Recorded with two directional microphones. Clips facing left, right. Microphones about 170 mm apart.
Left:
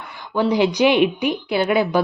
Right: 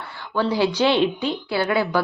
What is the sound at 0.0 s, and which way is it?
Speech, 15° left (ahead or behind).